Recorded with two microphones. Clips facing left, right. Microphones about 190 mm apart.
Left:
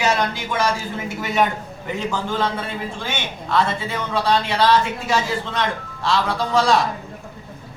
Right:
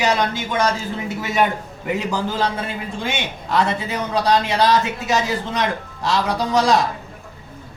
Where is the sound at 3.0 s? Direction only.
15° right (ahead or behind).